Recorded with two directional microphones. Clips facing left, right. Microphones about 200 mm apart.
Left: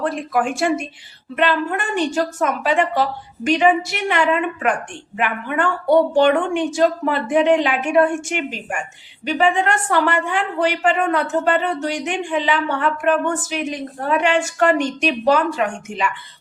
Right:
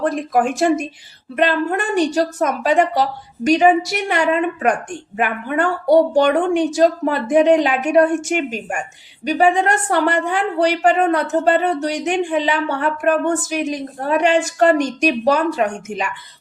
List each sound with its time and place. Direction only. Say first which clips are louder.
0.0 s a woman's voice: right 3 dB; 40° right (ahead or behind)